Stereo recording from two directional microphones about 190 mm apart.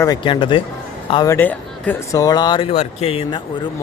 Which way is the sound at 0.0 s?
20° left (ahead or behind).